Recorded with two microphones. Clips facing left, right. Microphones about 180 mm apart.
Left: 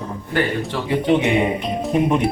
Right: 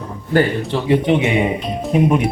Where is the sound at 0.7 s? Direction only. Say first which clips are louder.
Right 3 dB; 20° right (ahead or behind).